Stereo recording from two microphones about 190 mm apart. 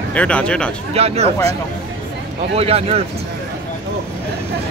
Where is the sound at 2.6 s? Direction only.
30° right (ahead or behind).